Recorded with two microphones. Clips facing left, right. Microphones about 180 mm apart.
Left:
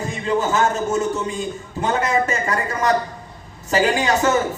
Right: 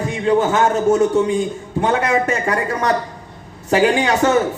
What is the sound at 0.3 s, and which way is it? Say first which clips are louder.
A woman's voice: right 2 dB; 55° right (ahead or behind).